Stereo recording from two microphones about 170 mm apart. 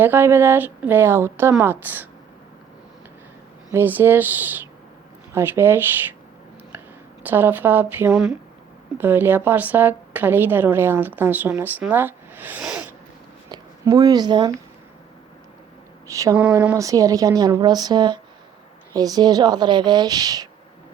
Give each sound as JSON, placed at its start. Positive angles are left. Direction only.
{"t": 0.0, "sound": "a woman's voice", "side_deg": -10}
{"t": 3.7, "sound": "a woman's voice", "side_deg": -10}
{"t": 13.5, "sound": "speech", "side_deg": -20}
{"t": 16.0, "sound": "speech", "side_deg": -20}